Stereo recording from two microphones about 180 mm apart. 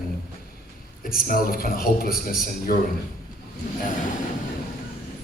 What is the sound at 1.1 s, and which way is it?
A man's voice, 55° left (ahead or behind).